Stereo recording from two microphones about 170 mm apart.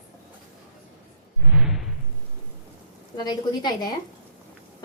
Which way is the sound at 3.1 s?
25° left (ahead or behind).